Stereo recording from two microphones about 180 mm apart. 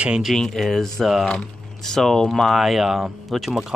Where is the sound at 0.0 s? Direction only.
5° right (ahead or behind).